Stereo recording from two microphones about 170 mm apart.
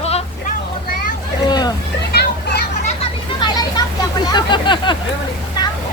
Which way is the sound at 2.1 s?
70° left (ahead or behind).